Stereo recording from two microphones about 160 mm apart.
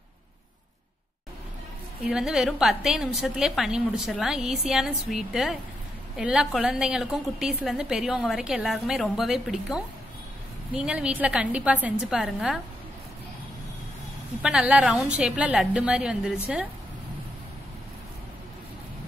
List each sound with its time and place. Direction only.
2.0 s a woman's voice: 5° right (ahead or behind)
14.4 s a woman's voice: 5° right (ahead or behind)